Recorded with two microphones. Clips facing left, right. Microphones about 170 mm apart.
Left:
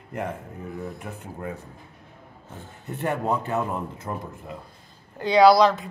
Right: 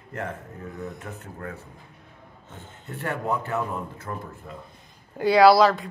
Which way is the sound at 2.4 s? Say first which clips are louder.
Left 3 dB; 20° right (ahead or behind).